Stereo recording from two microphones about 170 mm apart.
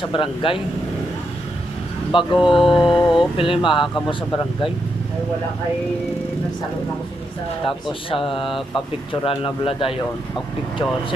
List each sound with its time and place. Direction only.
0.1 s speech: 30° left (ahead or behind)
2.3 s mantra: 5° right (ahead or behind)
3.3 s speech: 30° left (ahead or behind)
7.6 s speech: 30° left (ahead or behind)